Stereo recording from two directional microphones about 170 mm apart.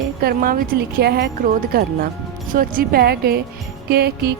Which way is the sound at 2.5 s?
55° right (ahead or behind).